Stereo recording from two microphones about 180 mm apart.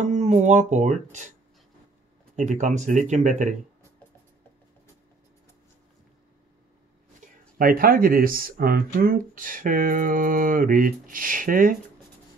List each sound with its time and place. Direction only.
0.0 s speech: 40° right (ahead or behind)
2.3 s speech: 45° right (ahead or behind)
7.5 s speech: 55° right (ahead or behind)